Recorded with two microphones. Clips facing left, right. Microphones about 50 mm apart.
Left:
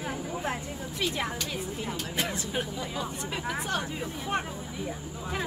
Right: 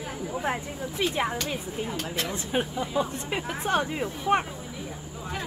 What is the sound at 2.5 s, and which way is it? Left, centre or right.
Speech, right.